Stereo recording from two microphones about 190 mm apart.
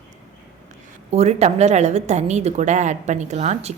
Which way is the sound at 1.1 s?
35° right (ahead or behind).